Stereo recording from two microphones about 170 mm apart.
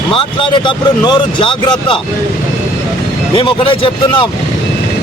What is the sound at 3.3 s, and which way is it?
Speech, 30° left (ahead or behind).